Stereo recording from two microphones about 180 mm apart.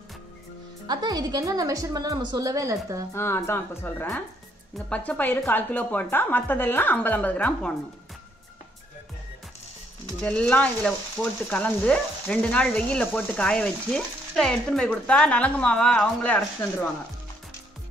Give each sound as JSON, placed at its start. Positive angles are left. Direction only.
{"t": 0.8, "sound": "a woman's voice", "side_deg": -20}
{"t": 3.2, "sound": "speech", "side_deg": 15}
{"t": 10.2, "sound": "speech", "side_deg": 5}